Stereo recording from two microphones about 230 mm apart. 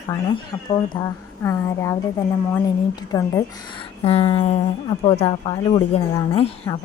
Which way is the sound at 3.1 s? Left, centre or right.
Centre.